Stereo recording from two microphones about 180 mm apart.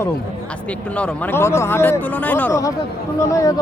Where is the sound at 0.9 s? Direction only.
10° left (ahead or behind).